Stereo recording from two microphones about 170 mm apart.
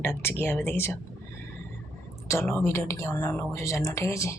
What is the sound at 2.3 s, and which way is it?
Speech, 15° left (ahead or behind).